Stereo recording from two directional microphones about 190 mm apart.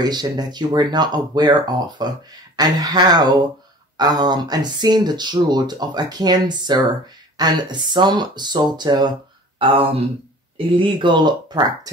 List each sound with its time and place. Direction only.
0.0 s speech: 20° right (ahead or behind)